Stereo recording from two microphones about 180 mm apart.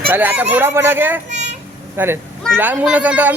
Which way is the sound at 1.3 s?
40° right (ahead or behind).